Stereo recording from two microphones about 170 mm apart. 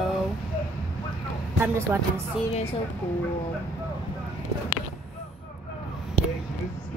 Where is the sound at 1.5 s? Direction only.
15° right (ahead or behind).